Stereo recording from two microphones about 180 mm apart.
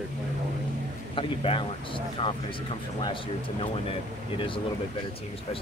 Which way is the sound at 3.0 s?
30° left (ahead or behind).